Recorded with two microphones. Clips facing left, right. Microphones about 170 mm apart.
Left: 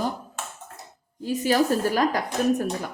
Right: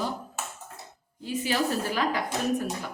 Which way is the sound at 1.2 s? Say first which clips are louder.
Left 6 dB; 45° left (ahead or behind).